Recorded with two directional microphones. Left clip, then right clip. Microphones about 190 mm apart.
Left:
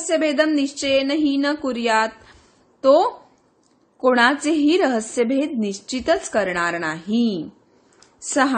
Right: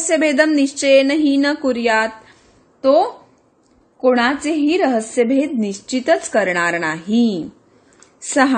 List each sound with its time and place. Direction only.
0.1 s a woman's voice: 5° right (ahead or behind)
2.8 s a woman's voice: 15° left (ahead or behind); by 8.5 s centre (ahead or behind)